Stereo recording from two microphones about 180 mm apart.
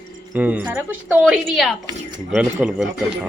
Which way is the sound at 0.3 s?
10° right (ahead or behind).